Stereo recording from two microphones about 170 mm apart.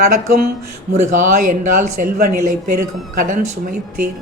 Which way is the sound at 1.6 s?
45° right (ahead or behind).